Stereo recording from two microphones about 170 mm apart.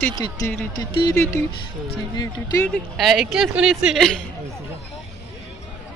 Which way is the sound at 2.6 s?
5° left (ahead or behind).